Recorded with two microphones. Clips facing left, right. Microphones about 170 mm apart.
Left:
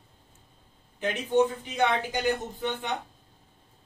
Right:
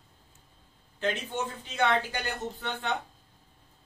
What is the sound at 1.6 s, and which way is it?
A man's voice, 15° left (ahead or behind).